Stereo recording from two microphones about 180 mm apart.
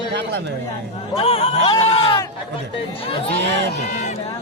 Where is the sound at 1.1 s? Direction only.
35° left (ahead or behind).